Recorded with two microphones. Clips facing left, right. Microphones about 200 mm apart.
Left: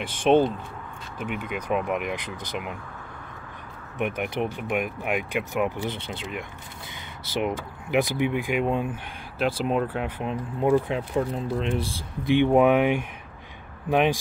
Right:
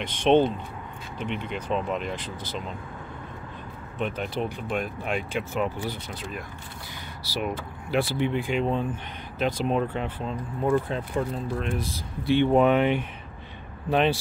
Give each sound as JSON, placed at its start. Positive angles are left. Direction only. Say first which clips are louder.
{"t": 0.0, "sound": "speech", "louder": "even", "side_deg": 5}
{"t": 4.0, "sound": "speech", "louder": "left 2 dB", "side_deg": 15}
{"t": 5.9, "sound": "speech", "louder": "left 2 dB", "side_deg": 25}
{"t": 11.6, "sound": "speech", "louder": "left 3 dB", "side_deg": 30}
{"t": 12.2, "sound": "speech", "louder": "left 1 dB", "side_deg": 15}